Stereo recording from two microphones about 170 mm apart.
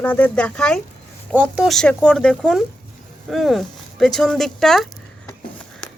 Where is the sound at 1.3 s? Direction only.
10° right (ahead or behind).